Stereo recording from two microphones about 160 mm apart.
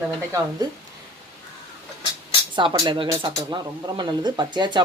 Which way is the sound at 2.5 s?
30° right (ahead or behind).